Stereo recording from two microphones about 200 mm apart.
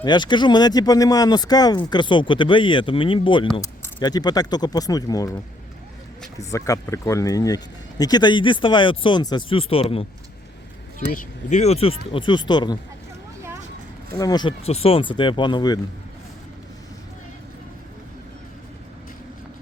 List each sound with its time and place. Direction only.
0.0 s speech: 20° left (ahead or behind)
6.4 s speech: 15° left (ahead or behind)
11.0 s speech: 45° left (ahead or behind); by 12.8 s 20° left (ahead or behind)
14.1 s speech: 20° left (ahead or behind)